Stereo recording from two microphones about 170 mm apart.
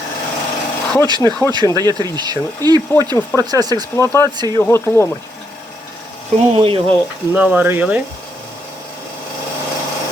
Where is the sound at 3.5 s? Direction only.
25° right (ahead or behind).